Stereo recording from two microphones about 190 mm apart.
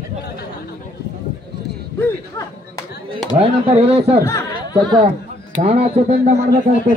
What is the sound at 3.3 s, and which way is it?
Speech, 30° right (ahead or behind).